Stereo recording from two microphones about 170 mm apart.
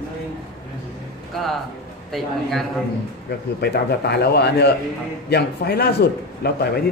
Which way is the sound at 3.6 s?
70° left (ahead or behind).